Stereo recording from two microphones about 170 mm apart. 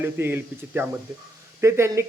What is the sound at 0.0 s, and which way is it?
Speech, 15° right (ahead or behind).